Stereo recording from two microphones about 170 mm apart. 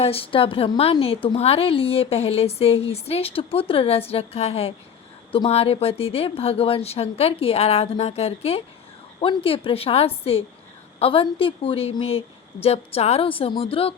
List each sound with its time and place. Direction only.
0.0 s a woman's voice: 35° left (ahead or behind)